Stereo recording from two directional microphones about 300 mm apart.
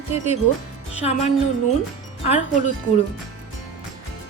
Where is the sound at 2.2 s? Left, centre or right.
Left.